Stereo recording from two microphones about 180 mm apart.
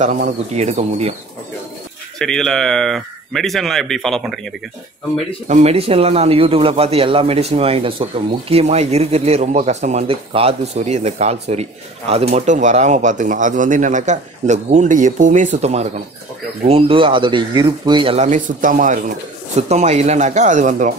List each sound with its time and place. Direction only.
0.6 s speech: 40° right (ahead or behind)
2.1 s speech: 5° left (ahead or behind)
5.5 s speech: 35° right (ahead or behind)